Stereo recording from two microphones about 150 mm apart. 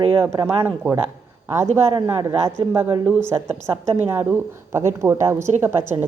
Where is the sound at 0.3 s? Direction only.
25° right (ahead or behind).